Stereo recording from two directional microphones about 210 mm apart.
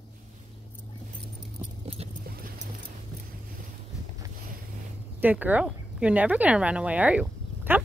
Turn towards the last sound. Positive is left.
turn(degrees=-5)  # may be behind; listen again after turning